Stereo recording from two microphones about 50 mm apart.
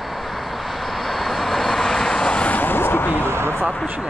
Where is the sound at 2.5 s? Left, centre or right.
Left.